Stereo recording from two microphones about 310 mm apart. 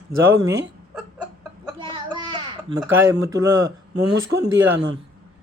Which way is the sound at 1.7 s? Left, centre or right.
Centre.